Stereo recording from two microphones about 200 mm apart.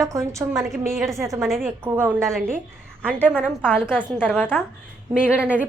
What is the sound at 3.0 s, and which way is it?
A woman's voice, 5° left (ahead or behind).